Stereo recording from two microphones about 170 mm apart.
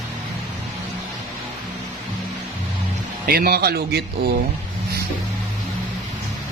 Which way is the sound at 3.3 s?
60° right (ahead or behind).